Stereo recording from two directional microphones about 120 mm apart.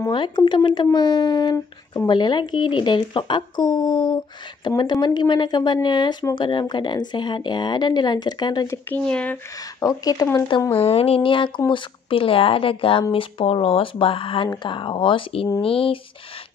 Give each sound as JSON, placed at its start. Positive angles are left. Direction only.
{"t": 0.5, "sound": "speech", "side_deg": 40}
{"t": 9.0, "sound": "speech", "side_deg": 10}
{"t": 9.8, "sound": "speech", "side_deg": 30}
{"t": 10.7, "sound": "speech", "side_deg": 55}